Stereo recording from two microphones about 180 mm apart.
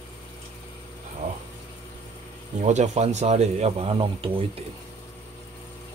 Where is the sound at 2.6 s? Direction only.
40° right (ahead or behind).